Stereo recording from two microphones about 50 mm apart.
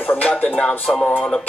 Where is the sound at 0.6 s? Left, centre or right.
Centre.